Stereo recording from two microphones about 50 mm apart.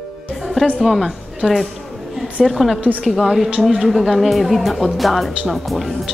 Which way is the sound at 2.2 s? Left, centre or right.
Centre.